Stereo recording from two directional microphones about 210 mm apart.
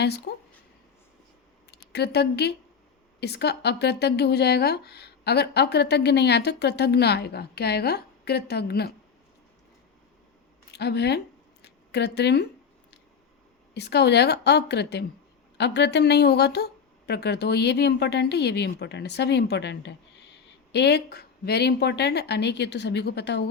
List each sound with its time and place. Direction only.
0.3 s a sound: 50° left (ahead or behind)
1.7 s speech: 50° left (ahead or behind)
10.7 s speech: 50° left (ahead or behind)
13.7 s speech: 50° left (ahead or behind)